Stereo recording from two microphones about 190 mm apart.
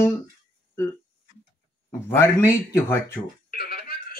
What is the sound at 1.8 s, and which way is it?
Speech, 15° left (ahead or behind).